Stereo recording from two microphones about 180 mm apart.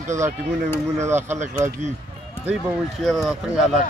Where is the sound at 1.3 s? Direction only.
40° right (ahead or behind).